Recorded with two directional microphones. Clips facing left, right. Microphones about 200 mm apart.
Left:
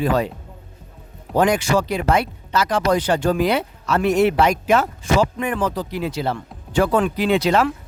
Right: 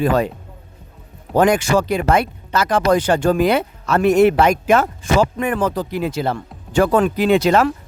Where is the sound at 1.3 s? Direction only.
50° right (ahead or behind).